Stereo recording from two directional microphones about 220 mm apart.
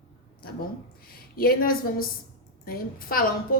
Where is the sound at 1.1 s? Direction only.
45° left (ahead or behind).